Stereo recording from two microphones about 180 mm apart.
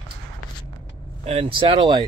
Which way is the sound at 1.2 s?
35° right (ahead or behind).